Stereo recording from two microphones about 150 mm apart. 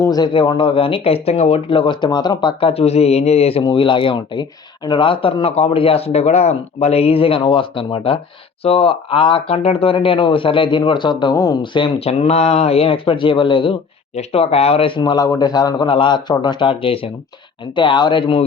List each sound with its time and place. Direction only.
0.0 s speech: 25° left (ahead or behind); by 3.6 s 45° left (ahead or behind)
3.6 s a man's voice: 30° left (ahead or behind)